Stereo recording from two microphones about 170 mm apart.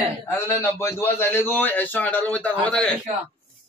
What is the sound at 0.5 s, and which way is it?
A man's voice, 15° left (ahead or behind).